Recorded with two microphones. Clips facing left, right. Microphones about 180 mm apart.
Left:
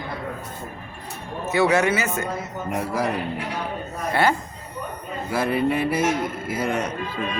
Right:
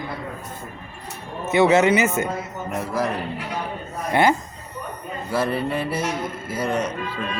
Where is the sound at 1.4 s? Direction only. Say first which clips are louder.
Right 3 dB; 20° right (ahead or behind).